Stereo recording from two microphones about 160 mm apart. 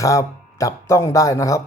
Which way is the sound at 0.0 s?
20° left (ahead or behind).